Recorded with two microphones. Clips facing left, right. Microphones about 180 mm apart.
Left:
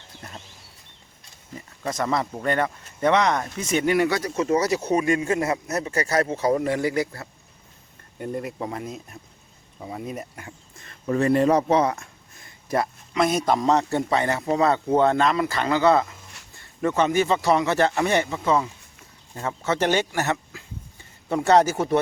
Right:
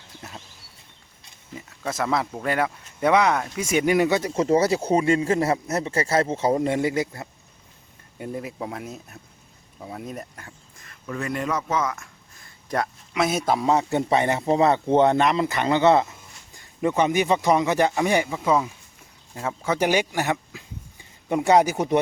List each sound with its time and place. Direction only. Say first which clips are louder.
0.2 s a sound: even; 5° right (ahead or behind)
1.5 s speech: even; 5° right (ahead or behind); by 7.3 s 20° right (ahead or behind)
8.2 s a man's voice: left 2 dB; 5° right (ahead or behind)
10.8 s speech: left 8 dB; 35° left (ahead or behind)
12.6 s a man's voice: left 2 dB; 5° left (ahead or behind)
14.1 s speech: right 3 dB; 20° right (ahead or behind)